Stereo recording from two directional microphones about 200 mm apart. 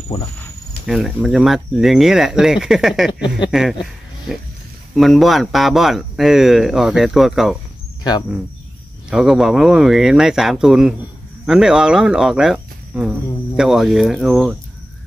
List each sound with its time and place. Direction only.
0.8 s speech: centre (ahead or behind)
3.1 s speech: 25° left (ahead or behind)
3.4 s speech: centre (ahead or behind)
9.1 s speech: centre (ahead or behind)